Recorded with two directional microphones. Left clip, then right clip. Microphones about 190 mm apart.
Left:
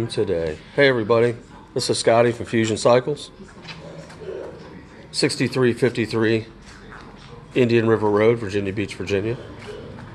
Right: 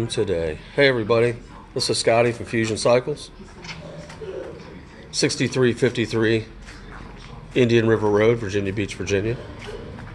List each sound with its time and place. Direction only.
0.0 s speech: 10° left (ahead or behind)
5.4 s speech: 10° left (ahead or behind)
7.5 s speech: 5° left (ahead or behind)